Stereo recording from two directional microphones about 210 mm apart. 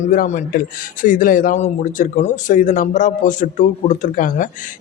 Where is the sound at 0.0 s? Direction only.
40° left (ahead or behind).